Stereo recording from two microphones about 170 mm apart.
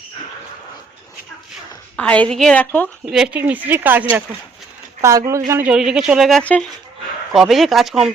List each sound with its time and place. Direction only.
2.0 s a woman's voice: 5° left (ahead or behind)
3.1 s speech: 5° right (ahead or behind)
5.0 s speech: 20° right (ahead or behind); by 8.1 s centre (ahead or behind)